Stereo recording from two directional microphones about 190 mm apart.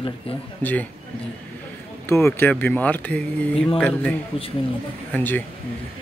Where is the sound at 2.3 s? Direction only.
10° left (ahead or behind).